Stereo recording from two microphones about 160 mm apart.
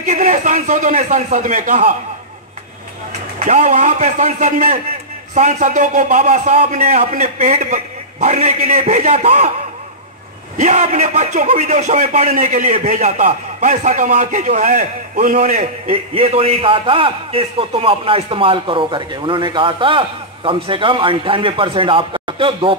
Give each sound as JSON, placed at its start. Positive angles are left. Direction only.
{"t": 0.0, "sound": "a man's voice", "side_deg": -50}
{"t": 3.4, "sound": "a man's voice", "side_deg": -50}
{"t": 10.6, "sound": "a man's voice", "side_deg": -50}